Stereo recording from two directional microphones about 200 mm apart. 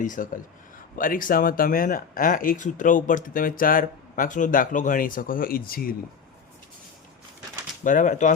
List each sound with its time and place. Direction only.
0.0 s speech: 40° left (ahead or behind)
7.9 s speech: 40° left (ahead or behind)